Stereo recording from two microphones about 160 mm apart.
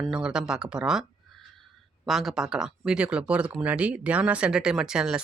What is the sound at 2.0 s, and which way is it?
Speech, centre (ahead or behind).